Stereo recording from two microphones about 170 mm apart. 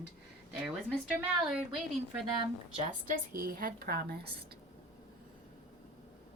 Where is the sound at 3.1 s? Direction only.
55° right (ahead or behind).